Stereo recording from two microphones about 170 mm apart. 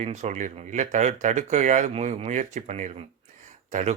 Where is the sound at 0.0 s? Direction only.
45° right (ahead or behind).